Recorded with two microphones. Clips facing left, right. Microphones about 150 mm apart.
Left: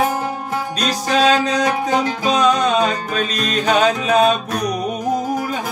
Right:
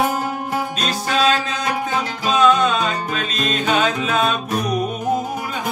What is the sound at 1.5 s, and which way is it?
Music, 40° left (ahead or behind).